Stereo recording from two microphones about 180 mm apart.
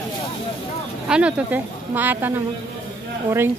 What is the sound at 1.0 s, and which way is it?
A woman's voice, 5° right (ahead or behind).